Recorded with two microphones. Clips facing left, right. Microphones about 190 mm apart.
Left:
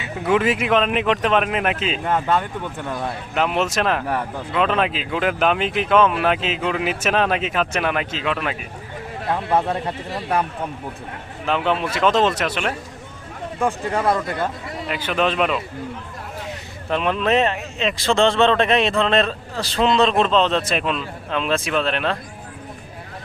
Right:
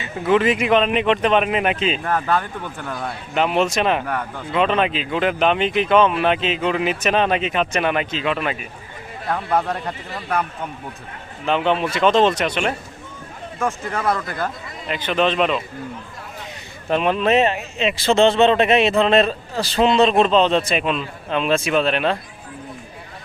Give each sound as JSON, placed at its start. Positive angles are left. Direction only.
{"t": 0.0, "sound": "speech", "side_deg": 5}
{"t": 2.0, "sound": "speech", "side_deg": 20}
{"t": 3.3, "sound": "speech", "side_deg": 0}
{"t": 9.3, "sound": "speech", "side_deg": 25}
{"t": 11.4, "sound": "speech", "side_deg": 0}
{"t": 13.9, "sound": "speech", "side_deg": 20}
{"t": 14.8, "sound": "speech", "side_deg": 5}
{"t": 16.9, "sound": "speech", "side_deg": -5}